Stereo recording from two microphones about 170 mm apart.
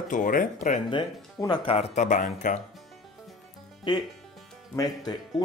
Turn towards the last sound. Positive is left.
turn(degrees=25)  # may be behind; listen again after turning